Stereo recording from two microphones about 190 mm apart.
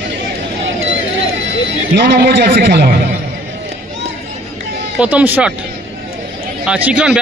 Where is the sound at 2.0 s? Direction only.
60° right (ahead or behind).